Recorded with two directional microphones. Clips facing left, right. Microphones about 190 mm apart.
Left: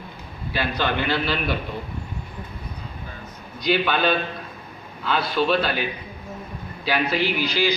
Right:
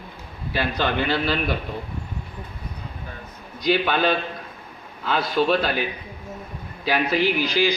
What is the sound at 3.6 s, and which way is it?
A man's voice, 40° right (ahead or behind).